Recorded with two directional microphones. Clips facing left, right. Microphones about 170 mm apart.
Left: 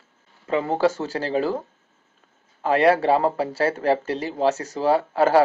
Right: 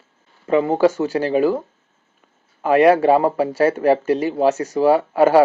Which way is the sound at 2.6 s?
20° right (ahead or behind).